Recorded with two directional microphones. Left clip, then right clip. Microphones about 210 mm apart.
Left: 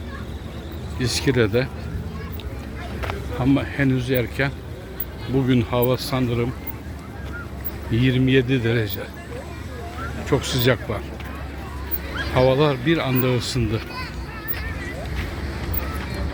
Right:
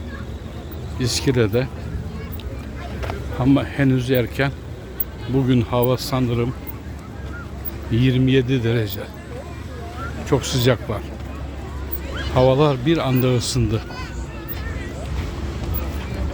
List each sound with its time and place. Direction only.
0.9 s speech: 10° right (ahead or behind)
3.0 s speech: 10° right (ahead or behind)
5.3 s speech: 5° right (ahead or behind)
7.9 s speech: 5° right (ahead or behind)
10.2 s speech: 10° right (ahead or behind)
12.3 s speech: 10° right (ahead or behind)